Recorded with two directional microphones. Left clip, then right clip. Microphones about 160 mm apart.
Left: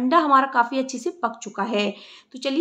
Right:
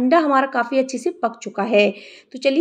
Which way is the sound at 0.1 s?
15° right (ahead or behind).